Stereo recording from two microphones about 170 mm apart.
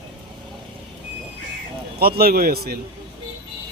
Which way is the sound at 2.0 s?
65° right (ahead or behind).